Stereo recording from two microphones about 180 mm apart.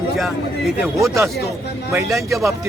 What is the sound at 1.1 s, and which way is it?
Speech, 15° right (ahead or behind).